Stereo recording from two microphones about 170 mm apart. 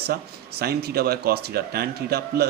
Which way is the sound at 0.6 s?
70° right (ahead or behind).